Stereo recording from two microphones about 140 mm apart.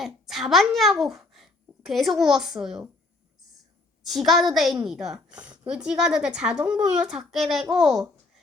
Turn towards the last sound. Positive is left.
turn(degrees=-5)  # may be behind; listen again after turning